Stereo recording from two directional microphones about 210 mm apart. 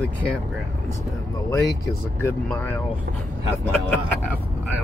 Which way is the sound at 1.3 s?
15° left (ahead or behind).